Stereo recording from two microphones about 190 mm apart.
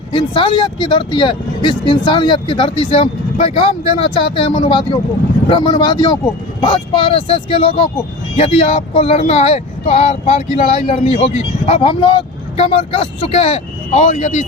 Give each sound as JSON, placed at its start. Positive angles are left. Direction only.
{"t": 0.1, "sound": "speech", "side_deg": 25}